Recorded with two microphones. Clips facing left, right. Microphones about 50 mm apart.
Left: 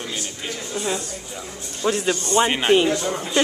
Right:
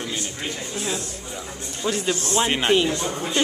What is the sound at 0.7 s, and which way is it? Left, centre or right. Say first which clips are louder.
A man's voice: left 3 dB; centre.